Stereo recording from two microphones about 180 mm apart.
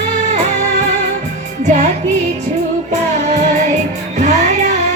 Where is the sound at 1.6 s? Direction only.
40° right (ahead or behind).